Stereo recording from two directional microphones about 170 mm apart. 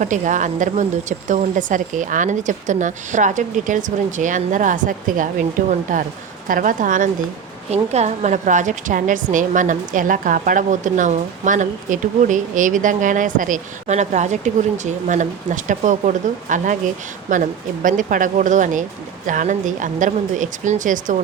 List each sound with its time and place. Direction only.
0.0 s a woman's voice: 45° right (ahead or behind)